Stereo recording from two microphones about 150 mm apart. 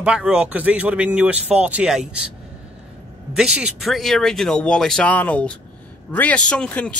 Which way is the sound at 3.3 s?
5° right (ahead or behind).